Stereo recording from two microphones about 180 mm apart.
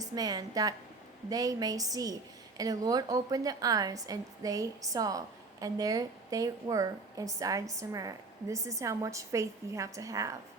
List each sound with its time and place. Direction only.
0.0 s a woman's voice: 20° right (ahead or behind)